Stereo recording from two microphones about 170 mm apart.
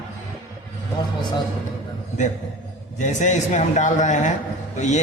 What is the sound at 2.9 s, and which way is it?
A man's voice, 45° left (ahead or behind).